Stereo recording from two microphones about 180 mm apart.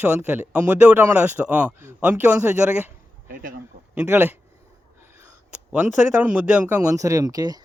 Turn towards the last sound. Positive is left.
turn(degrees=-20)  # may be behind; listen again after turning